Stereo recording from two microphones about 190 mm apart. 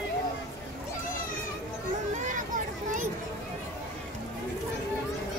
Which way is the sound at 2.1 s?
40° right (ahead or behind).